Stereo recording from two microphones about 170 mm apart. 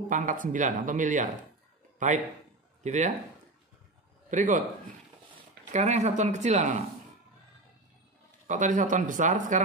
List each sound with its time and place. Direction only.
0.1 s speech: 50° right (ahead or behind)
4.3 s speech: 50° right (ahead or behind)
5.7 s speech: 40° right (ahead or behind)
8.5 s speech: 45° right (ahead or behind)